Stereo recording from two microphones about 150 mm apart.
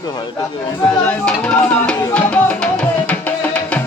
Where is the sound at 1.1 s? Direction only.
5° left (ahead or behind).